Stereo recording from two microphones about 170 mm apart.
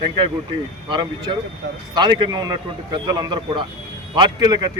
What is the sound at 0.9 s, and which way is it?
Speech, 25° right (ahead or behind).